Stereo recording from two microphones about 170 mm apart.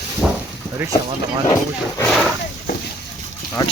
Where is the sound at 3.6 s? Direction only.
25° left (ahead or behind).